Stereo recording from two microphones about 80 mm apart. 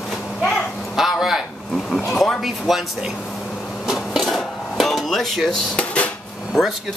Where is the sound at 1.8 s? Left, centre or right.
Centre.